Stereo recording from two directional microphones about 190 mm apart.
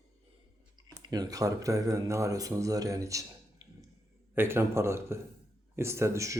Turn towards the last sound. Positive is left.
turn(degrees=-15)  # may be behind; listen again after turning